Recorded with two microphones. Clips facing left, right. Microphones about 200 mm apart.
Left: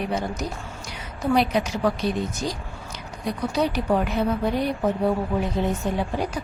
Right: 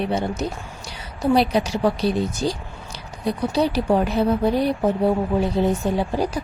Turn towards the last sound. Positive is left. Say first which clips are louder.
# right 4 dB
turn(degrees=-35)  # may be behind; listen again after turning